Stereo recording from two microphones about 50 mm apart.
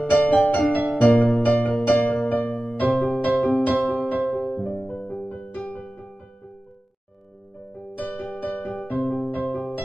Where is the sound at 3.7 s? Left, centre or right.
Right.